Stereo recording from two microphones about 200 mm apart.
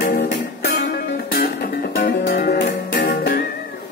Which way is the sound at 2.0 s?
50° left (ahead or behind).